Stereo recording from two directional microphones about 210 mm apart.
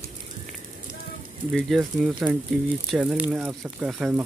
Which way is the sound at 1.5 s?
Centre (ahead or behind).